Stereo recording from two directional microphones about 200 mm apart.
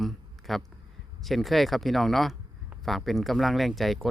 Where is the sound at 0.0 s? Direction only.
Centre (ahead or behind).